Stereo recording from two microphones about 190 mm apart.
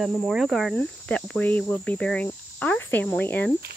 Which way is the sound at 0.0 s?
Centre (ahead or behind).